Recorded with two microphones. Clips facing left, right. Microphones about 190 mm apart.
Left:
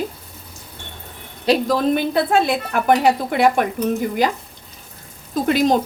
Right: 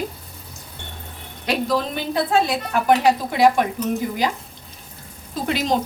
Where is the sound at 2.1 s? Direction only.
60° left (ahead or behind).